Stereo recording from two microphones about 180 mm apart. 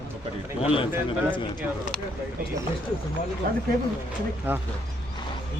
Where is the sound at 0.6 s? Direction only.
30° left (ahead or behind).